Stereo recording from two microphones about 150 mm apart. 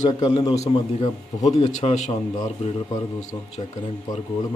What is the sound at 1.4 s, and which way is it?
Speech, 50° left (ahead or behind).